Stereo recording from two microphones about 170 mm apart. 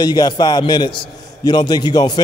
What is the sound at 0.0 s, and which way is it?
A man's voice, 25° left (ahead or behind).